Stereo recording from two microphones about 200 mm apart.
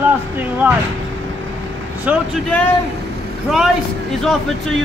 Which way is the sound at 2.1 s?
5° right (ahead or behind).